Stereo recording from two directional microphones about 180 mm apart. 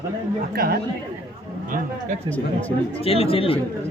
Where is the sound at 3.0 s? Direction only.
35° left (ahead or behind).